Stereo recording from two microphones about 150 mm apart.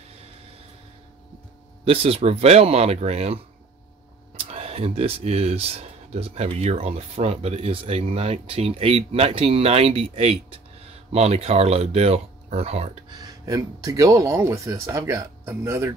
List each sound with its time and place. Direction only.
1.9 s speech: 40° right (ahead or behind)
4.5 s speech: 40° right (ahead or behind)
13.1 s speech: 25° right (ahead or behind)